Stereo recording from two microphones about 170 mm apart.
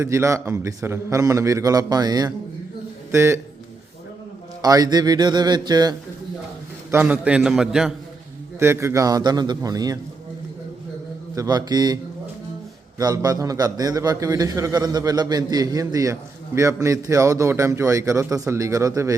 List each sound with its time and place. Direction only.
0.0 s a man's voice: 15° right (ahead or behind)
4.6 s a man's voice: 20° right (ahead or behind)
6.9 s a man's voice: 10° right (ahead or behind)
8.5 s a man's voice: 15° right (ahead or behind)
11.3 s a man's voice: 25° right (ahead or behind)
13.0 s a man's voice: 20° right (ahead or behind)